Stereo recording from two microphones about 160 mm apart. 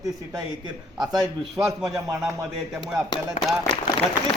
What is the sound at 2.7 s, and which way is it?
Speech, 5° right (ahead or behind).